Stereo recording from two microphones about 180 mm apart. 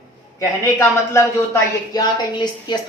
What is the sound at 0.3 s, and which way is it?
Speech, 15° left (ahead or behind).